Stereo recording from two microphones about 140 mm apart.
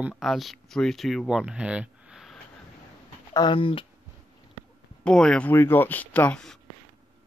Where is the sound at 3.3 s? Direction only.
35° left (ahead or behind).